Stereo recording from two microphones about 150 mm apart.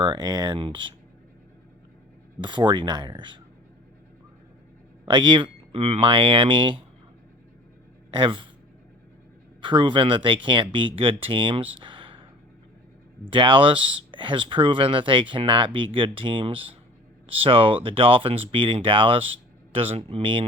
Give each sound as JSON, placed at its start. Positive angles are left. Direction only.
{"t": 0.0, "sound": "speech", "side_deg": -30}
{"t": 2.4, "sound": "speech", "side_deg": -30}
{"t": 5.0, "sound": "speech", "side_deg": -30}
{"t": 8.1, "sound": "speech", "side_deg": -35}
{"t": 9.6, "sound": "speech", "side_deg": -30}
{"t": 13.3, "sound": "speech", "side_deg": -35}